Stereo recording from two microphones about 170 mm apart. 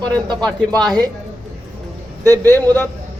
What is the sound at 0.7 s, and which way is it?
Speech, 25° right (ahead or behind).